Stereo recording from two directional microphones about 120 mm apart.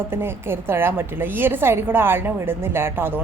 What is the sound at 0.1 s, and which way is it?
A woman's voice, 20° right (ahead or behind).